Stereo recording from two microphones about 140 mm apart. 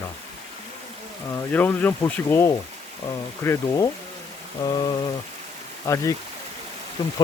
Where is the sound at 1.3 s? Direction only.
10° left (ahead or behind).